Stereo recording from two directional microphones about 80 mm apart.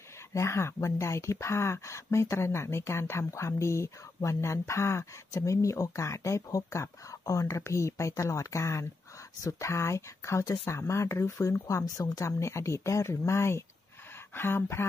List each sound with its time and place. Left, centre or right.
0.3 s speech: left